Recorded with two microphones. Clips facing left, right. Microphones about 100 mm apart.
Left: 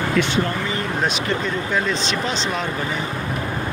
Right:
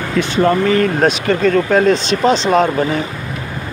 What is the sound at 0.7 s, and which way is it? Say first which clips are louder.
Speech: right 10 dB; 65° right (ahead or behind).